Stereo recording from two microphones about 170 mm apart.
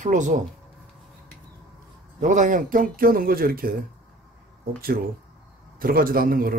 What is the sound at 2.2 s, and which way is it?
Speech, 50° right (ahead or behind).